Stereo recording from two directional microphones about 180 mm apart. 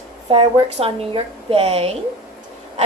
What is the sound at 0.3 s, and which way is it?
A woman's voice, 30° right (ahead or behind).